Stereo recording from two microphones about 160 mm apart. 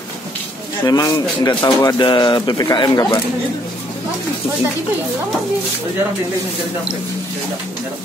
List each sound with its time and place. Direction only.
0.8 s speech: 25° left (ahead or behind)